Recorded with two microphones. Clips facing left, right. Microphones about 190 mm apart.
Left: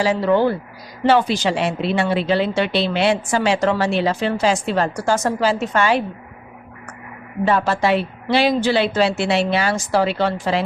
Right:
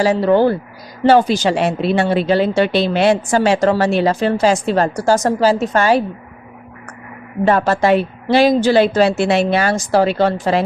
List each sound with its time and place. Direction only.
0.0 s a woman's voice: 40° right (ahead or behind)
7.4 s a woman's voice: 50° right (ahead or behind)